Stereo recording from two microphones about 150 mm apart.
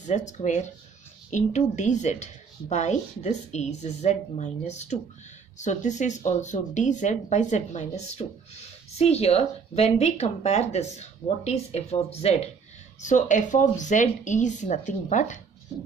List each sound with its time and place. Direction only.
0.0 s speech: 50° left (ahead or behind)
13.0 s speech: 55° left (ahead or behind)